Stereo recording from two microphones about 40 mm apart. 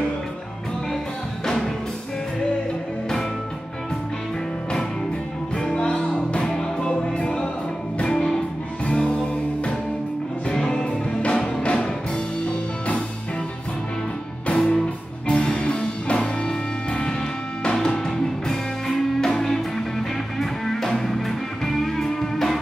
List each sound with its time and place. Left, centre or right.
1.4 s music: centre
5.7 s music: left
6.4 s music: centre
8.8 s music: left
10.5 s music: centre
14.5 s music: left